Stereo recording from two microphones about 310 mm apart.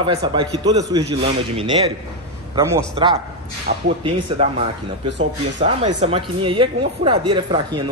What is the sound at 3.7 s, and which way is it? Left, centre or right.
Speech, right.